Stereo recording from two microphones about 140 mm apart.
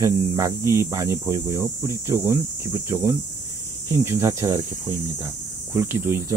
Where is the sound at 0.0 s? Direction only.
20° right (ahead or behind).